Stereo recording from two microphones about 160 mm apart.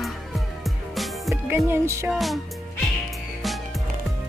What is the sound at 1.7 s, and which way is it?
Music, 15° right (ahead or behind).